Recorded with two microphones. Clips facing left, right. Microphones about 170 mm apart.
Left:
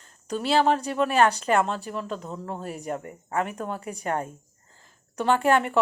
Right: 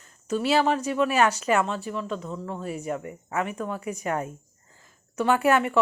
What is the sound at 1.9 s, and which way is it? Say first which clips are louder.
Speech: right 1 dB; 40° left (ahead or behind).